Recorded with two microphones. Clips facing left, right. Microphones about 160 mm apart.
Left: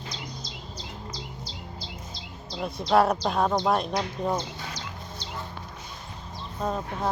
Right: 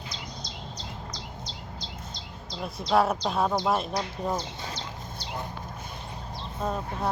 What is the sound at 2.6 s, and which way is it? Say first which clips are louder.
Speech: left 2 dB; centre (ahead or behind).